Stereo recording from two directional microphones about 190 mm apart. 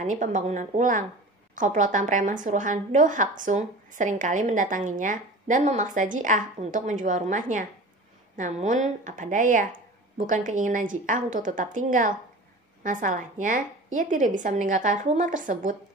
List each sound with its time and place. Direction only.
0.0 s a woman's voice: 40° right (ahead or behind)